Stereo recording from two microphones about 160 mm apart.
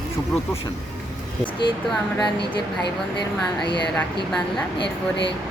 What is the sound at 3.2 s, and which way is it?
Speech, 30° left (ahead or behind).